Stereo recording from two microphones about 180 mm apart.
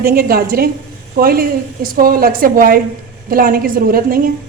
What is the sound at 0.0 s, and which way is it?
A woman's voice, 55° right (ahead or behind).